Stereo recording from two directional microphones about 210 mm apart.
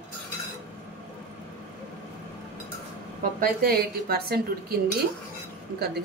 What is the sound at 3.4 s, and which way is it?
A woman's voice, 45° right (ahead or behind).